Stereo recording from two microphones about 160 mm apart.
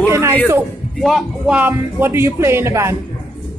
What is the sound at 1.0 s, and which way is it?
A woman's voice, centre (ahead or behind).